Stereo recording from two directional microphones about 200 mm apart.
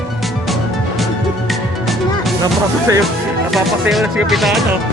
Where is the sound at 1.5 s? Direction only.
Centre (ahead or behind).